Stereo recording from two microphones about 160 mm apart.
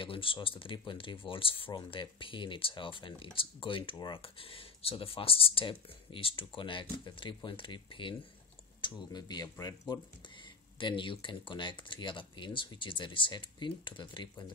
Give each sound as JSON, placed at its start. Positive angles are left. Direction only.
{"t": 0.0, "sound": "speech", "side_deg": 35}